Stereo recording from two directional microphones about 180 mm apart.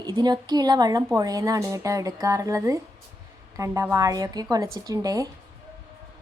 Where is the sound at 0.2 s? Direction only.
25° right (ahead or behind).